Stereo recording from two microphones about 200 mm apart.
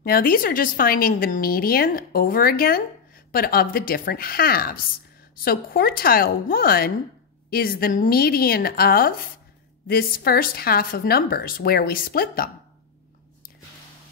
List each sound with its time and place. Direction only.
0.0 s a woman's voice: 45° left (ahead or behind)